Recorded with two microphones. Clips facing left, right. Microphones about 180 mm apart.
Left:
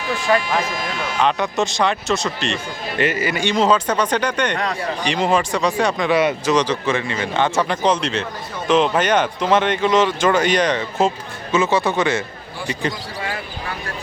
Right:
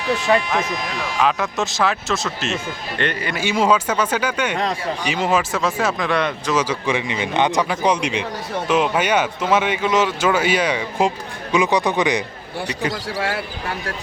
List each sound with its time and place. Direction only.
0.1 s speech: 20° right (ahead or behind)
1.2 s speech: centre (ahead or behind)
3.4 s speech: 10° right (ahead or behind)
6.6 s speech: 10° right (ahead or behind)
12.9 s speech: 80° right